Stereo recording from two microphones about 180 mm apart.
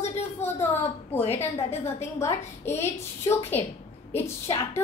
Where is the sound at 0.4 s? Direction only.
40° left (ahead or behind).